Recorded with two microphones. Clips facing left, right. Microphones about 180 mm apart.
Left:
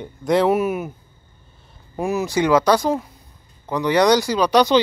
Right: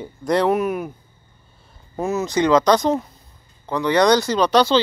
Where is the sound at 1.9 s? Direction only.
15° left (ahead or behind).